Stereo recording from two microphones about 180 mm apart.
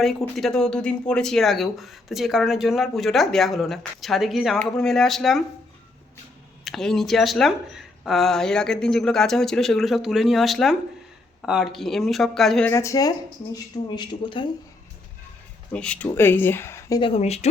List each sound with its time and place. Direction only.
0.0 s speech: centre (ahead or behind)
6.7 s speech: centre (ahead or behind)
12.7 s speech: 15° left (ahead or behind)
15.7 s speech: 5° left (ahead or behind)
17.0 s speech: 35° left (ahead or behind)